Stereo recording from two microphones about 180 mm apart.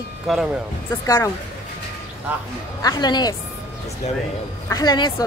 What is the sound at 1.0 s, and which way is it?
Speech, 15° left (ahead or behind).